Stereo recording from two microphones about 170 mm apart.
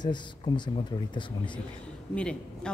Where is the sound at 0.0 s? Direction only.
25° left (ahead or behind).